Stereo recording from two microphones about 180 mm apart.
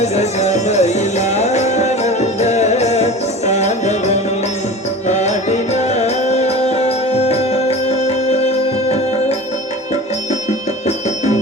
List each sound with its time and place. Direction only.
0.0 s music: 40° left (ahead or behind)